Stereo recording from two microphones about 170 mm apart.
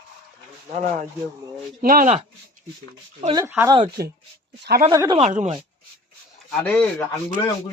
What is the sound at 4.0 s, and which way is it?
Speech, 65° right (ahead or behind).